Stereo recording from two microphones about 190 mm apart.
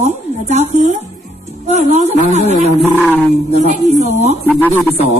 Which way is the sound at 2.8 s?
Centre (ahead or behind).